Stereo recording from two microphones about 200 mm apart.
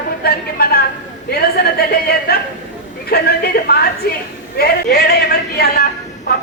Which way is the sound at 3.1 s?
50° left (ahead or behind).